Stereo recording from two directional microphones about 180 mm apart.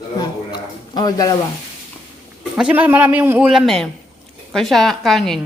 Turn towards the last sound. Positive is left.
turn(degrees=0)  # may be behind; listen again after turning